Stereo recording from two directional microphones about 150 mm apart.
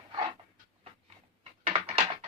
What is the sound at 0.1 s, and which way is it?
Dog, 30° right (ahead or behind).